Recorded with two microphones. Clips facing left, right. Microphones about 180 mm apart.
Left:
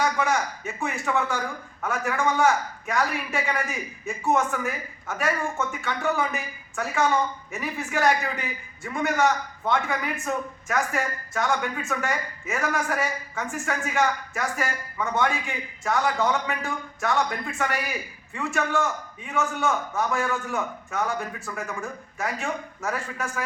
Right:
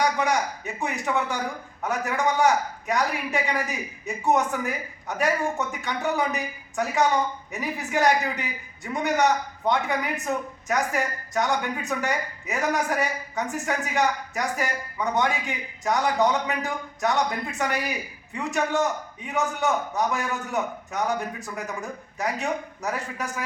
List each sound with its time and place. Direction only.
0.0 s a woman's voice: 20° right (ahead or behind)